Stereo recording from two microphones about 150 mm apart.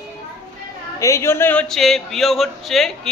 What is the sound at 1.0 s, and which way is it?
A man's voice, 20° left (ahead or behind).